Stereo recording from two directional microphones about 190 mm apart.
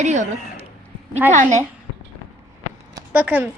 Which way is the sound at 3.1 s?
10° right (ahead or behind).